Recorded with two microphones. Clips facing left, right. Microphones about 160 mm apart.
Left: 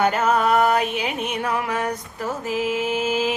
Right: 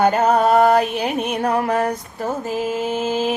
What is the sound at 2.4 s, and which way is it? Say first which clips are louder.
Music: left 1 dB; 45° right (ahead or behind).